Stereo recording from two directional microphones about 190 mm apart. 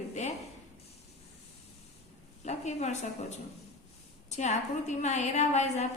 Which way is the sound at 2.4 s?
35° left (ahead or behind).